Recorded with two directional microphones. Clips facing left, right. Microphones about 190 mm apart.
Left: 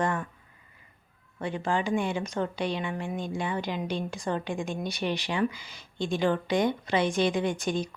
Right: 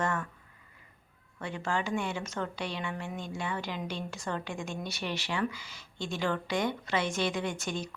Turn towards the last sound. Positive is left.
turn(degrees=15)  # may be behind; listen again after turning